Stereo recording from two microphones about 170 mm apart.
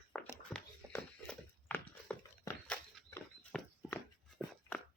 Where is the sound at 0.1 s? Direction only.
10° left (ahead or behind).